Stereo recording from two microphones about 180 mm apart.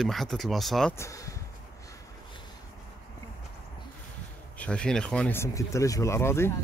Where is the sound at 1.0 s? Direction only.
15° left (ahead or behind).